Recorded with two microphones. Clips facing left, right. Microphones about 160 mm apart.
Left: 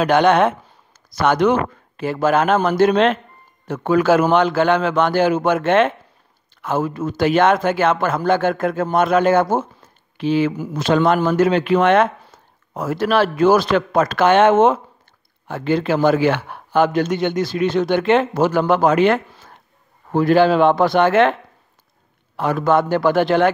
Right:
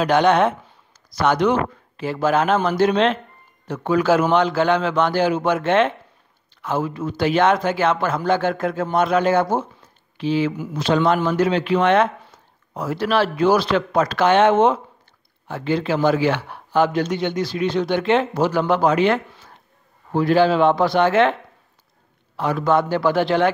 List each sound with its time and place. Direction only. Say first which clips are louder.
0.0 s a man's voice: left 2 dB; 55° left (ahead or behind)
22.4 s a man's voice: left 2 dB; 50° left (ahead or behind)